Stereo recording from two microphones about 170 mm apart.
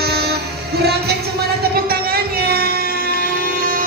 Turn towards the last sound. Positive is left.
turn(degrees=-65)  # may be behind; listen again after turning